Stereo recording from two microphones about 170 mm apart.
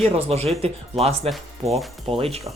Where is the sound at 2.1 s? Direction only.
35° right (ahead or behind).